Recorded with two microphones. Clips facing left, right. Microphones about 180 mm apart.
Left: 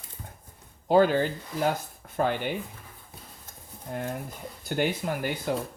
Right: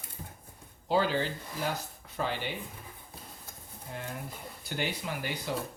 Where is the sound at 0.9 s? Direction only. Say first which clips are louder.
Left 7 dB; 50° left (ahead or behind).